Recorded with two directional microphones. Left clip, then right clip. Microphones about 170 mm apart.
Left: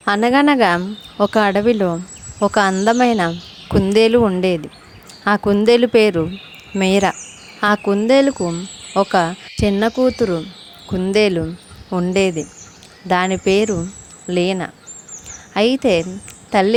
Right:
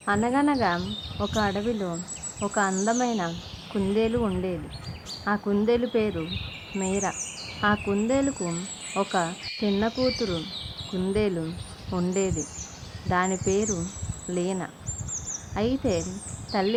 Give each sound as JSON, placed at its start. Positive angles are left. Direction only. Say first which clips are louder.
{"t": 0.0, "sound": "speech", "louder": "left 10 dB", "side_deg": 70}